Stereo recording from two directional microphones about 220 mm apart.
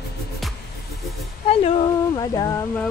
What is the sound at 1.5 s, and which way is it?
Speech, 25° left (ahead or behind).